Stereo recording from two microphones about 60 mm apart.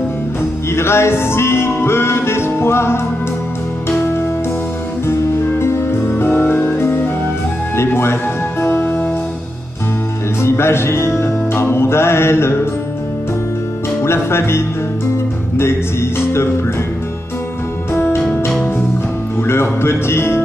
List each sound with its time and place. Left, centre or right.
0.7 s music: left
5.0 s music: left
10.4 s music: left
14.0 s speech: left
15.5 s music: left
17.9 s music: left
19.4 s music: left